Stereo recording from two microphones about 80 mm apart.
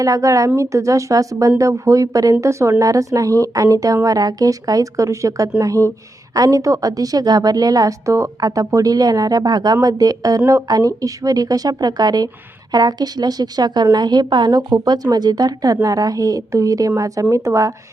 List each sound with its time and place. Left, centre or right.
0.0 s a woman's voice: right
8.4 s a woman's voice: right